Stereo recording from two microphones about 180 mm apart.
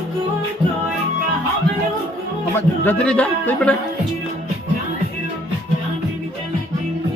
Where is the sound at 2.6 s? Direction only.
10° left (ahead or behind).